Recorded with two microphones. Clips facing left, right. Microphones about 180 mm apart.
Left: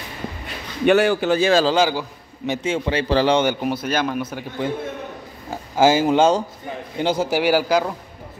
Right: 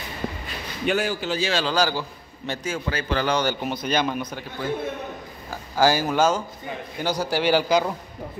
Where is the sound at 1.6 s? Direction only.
20° left (ahead or behind).